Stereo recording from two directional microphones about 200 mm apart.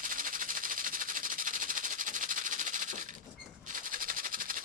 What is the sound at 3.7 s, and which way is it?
Music, 45° right (ahead or behind).